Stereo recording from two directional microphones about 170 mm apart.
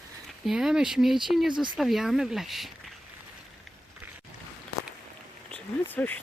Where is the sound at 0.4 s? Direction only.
5° right (ahead or behind).